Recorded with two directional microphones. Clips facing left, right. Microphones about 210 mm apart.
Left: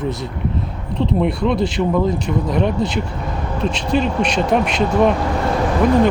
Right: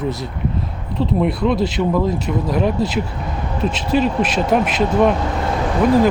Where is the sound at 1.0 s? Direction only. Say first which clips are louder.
Even; centre (ahead or behind).